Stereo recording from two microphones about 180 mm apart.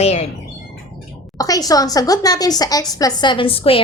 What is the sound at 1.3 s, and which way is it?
A woman's voice, 20° left (ahead or behind).